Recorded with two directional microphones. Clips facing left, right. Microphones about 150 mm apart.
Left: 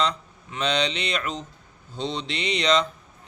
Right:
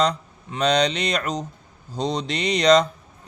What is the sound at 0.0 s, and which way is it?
Speech, 40° right (ahead or behind).